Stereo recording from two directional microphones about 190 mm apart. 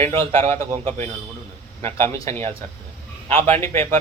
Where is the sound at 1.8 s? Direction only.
15° left (ahead or behind).